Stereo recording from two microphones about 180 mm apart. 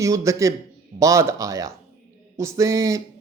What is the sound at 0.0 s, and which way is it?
A man's voice, 15° right (ahead or behind).